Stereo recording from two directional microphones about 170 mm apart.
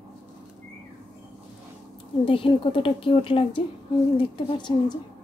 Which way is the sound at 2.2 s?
30° left (ahead or behind).